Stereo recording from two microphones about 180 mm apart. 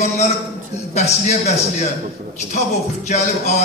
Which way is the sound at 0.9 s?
40° left (ahead or behind).